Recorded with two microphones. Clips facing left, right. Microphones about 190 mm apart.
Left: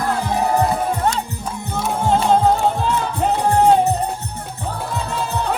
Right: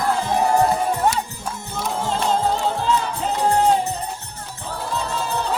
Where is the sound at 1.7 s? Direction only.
55° left (ahead or behind).